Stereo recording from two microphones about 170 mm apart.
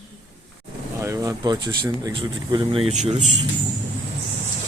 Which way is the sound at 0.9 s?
15° right (ahead or behind).